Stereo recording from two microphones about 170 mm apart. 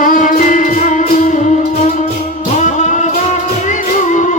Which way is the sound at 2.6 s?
45° left (ahead or behind).